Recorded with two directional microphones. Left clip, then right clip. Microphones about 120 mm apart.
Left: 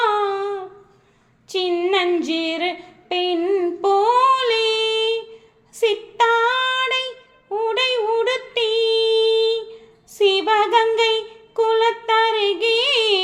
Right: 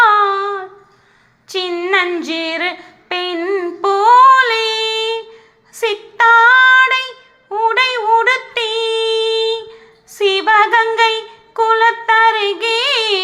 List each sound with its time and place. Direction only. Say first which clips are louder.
0.0 s humming: right 8 dB; 20° left (ahead or behind)
1.7 s female singing: right 4 dB; 15° left (ahead or behind)
8.9 s humming: right 1 dB; 45° right (ahead or behind)
10.1 s a sound: right 4 dB; 15° left (ahead or behind)
11.2 s music: right 4 dB; 15° left (ahead or behind)